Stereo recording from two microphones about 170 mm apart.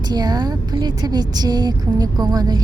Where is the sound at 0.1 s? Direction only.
25° right (ahead or behind).